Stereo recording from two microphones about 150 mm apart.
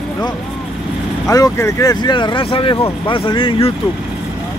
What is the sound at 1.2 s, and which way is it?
Speech, 20° left (ahead or behind).